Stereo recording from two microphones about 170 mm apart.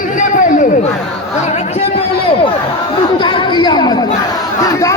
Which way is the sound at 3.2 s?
30° left (ahead or behind).